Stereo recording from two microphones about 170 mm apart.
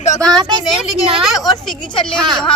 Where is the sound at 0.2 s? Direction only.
25° right (ahead or behind).